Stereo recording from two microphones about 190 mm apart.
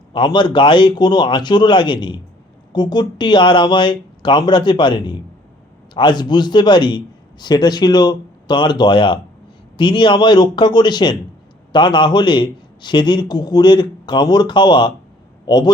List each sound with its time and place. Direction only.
0.1 s a man's voice: 25° left (ahead or behind)